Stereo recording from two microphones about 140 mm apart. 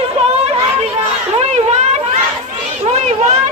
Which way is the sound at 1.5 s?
55° right (ahead or behind).